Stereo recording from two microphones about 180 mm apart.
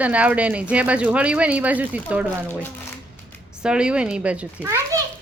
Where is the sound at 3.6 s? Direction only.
5° right (ahead or behind).